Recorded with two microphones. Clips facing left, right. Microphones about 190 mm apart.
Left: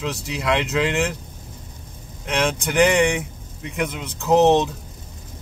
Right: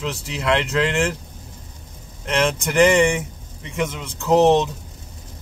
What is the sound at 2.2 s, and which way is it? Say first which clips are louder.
Speech: right 2 dB; centre (ahead or behind).